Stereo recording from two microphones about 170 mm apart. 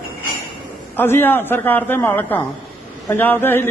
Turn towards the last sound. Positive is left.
turn(degrees=10)  # may be behind; listen again after turning